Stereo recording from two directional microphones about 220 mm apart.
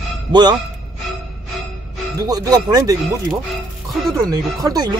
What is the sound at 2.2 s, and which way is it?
Speech, 15° right (ahead or behind).